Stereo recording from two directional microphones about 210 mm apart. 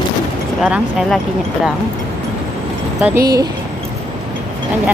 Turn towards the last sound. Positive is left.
turn(degrees=-15)  # may be behind; listen again after turning